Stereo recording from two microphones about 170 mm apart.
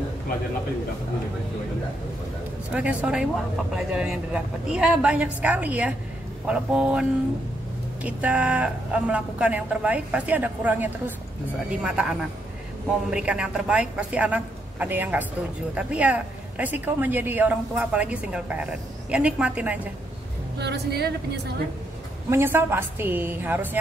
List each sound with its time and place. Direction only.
2.7 s speech: 10° right (ahead or behind)
20.5 s a woman's voice: 75° right (ahead or behind)
22.3 s speech: 15° right (ahead or behind)